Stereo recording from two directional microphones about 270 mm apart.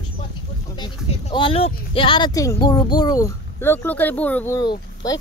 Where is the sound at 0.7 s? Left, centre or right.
Centre.